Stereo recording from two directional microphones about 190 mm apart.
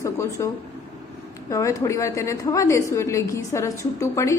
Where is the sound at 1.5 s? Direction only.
15° left (ahead or behind).